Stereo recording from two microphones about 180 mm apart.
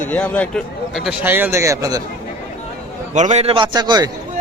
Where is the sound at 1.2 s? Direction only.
10° right (ahead or behind).